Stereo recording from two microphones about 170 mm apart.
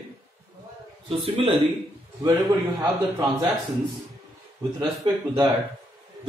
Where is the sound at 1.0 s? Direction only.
30° right (ahead or behind).